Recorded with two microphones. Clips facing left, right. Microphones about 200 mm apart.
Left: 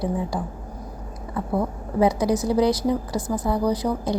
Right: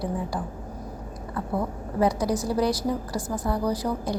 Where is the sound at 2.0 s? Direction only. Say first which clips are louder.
Left 4 dB; 20° left (ahead or behind).